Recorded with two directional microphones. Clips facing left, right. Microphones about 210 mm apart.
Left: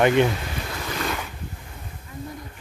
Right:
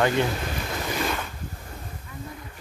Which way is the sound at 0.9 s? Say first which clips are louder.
Even; 5° right (ahead or behind).